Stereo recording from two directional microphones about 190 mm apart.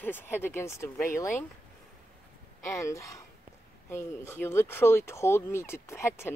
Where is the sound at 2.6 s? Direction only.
15° left (ahead or behind).